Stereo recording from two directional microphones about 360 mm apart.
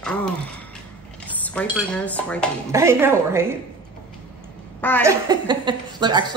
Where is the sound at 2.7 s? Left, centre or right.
Centre.